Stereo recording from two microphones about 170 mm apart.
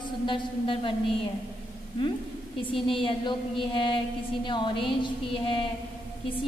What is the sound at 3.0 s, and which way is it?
A woman's voice, 30° left (ahead or behind).